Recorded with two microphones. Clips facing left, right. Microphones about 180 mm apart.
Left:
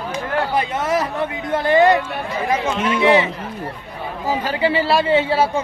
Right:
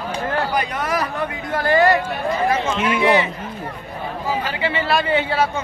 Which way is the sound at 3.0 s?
25° left (ahead or behind).